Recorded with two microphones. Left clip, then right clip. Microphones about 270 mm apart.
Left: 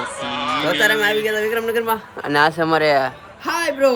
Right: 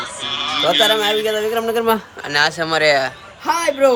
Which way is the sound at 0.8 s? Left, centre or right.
Centre.